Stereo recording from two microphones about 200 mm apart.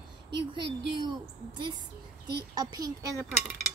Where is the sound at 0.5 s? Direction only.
25° right (ahead or behind).